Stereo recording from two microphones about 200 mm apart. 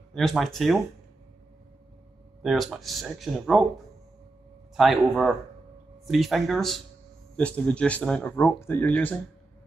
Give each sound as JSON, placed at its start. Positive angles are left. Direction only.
{"t": 0.1, "sound": "speech", "side_deg": 0}
{"t": 2.4, "sound": "speech", "side_deg": 0}
{"t": 4.7, "sound": "speech", "side_deg": 0}